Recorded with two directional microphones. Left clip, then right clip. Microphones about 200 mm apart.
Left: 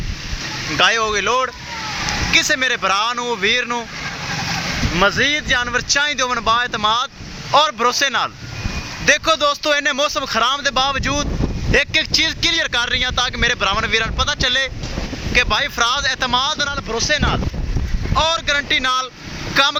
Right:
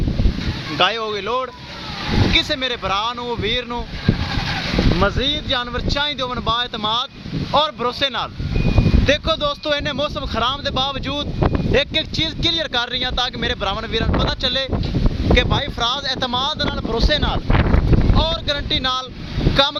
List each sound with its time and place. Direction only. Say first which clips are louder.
0.8 s speech: left 3 dB; 5° left (ahead or behind)
5.0 s speech: left 8 dB; centre (ahead or behind)
17.0 s speech: left 2 dB; 15° right (ahead or behind)
18.2 s speech: left 8 dB; centre (ahead or behind)